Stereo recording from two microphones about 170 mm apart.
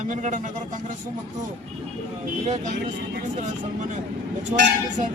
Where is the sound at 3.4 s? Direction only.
45° right (ahead or behind).